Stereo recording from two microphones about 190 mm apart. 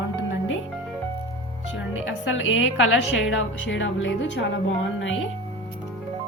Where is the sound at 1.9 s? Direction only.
90° left; by 5.2 s 70° left (ahead or behind).